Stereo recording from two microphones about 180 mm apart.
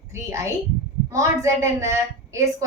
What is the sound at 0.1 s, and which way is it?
A woman's voice, 15° right (ahead or behind).